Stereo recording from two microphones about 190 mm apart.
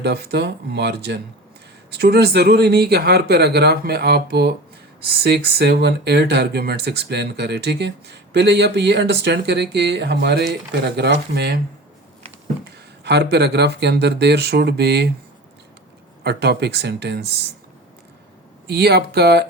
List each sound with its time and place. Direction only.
0.0 s speech: 60° right (ahead or behind)
13.3 s speech: 60° right (ahead or behind)
16.2 s speech: 60° right (ahead or behind)
18.7 s speech: 60° right (ahead or behind)